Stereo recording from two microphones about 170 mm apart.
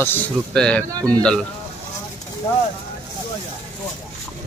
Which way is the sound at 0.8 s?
20° right (ahead or behind).